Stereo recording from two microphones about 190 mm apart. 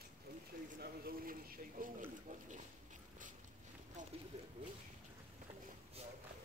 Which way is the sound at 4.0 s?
40° right (ahead or behind).